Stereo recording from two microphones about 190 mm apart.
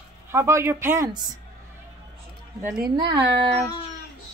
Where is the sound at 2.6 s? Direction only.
20° right (ahead or behind).